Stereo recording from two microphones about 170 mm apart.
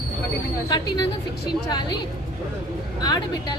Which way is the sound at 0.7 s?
20° left (ahead or behind).